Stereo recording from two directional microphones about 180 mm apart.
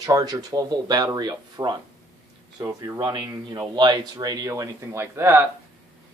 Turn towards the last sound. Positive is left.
turn(degrees=-15)  # may be behind; listen again after turning